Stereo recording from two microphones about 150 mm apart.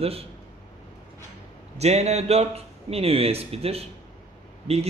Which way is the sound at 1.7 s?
45° right (ahead or behind).